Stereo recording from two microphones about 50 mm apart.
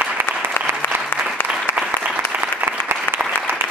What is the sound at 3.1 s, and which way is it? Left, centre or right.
Applause, left.